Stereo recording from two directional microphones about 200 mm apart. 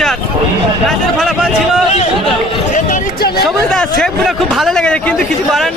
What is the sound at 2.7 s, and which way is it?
Speech, 45° left (ahead or behind).